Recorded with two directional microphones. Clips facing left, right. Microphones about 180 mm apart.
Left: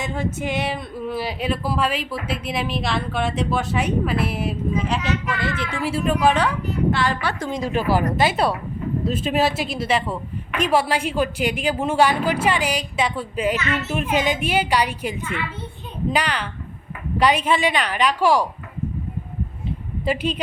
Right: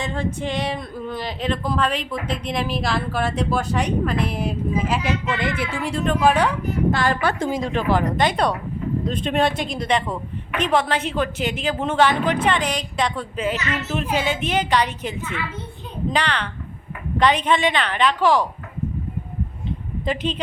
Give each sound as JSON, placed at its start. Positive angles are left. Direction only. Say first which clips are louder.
{"t": 0.0, "sound": "male singing", "louder": "even", "side_deg": 5}
{"t": 0.3, "sound": "a woman's voice", "louder": "even", "side_deg": 5}
{"t": 4.9, "sound": "speech", "louder": "right 1 dB", "side_deg": -10}
{"t": 5.2, "sound": "speech", "louder": "right 2 dB", "side_deg": -20}
{"t": 5.7, "sound": "a woman's voice", "louder": "left 4 dB", "side_deg": 5}
{"t": 6.7, "sound": "speech", "louder": "right 1 dB", "side_deg": -50}
{"t": 7.5, "sound": "a woman's voice", "louder": "even", "side_deg": 5}
{"t": 20.1, "sound": "a woman's voice", "louder": "left 2 dB", "side_deg": 10}